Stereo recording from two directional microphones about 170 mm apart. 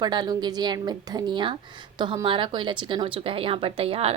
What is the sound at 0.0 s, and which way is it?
Speech, 25° right (ahead or behind).